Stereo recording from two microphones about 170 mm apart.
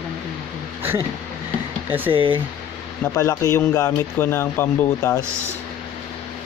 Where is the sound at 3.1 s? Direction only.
15° left (ahead or behind).